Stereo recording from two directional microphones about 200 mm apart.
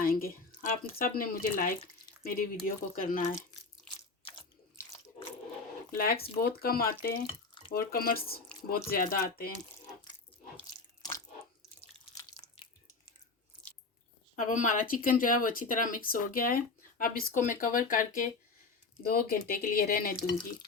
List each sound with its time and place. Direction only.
0.0 s a sound: 45° left (ahead or behind)
0.9 s speech: 45° left (ahead or behind)
6.2 s speech: 50° left (ahead or behind)
7.3 s drip: 25° left (ahead or behind)
7.7 s speech: 50° left (ahead or behind)
12.1 s drip: 20° left (ahead or behind)
14.3 s speech: 40° left (ahead or behind)